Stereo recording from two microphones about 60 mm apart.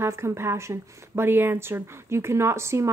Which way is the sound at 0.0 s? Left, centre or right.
Right.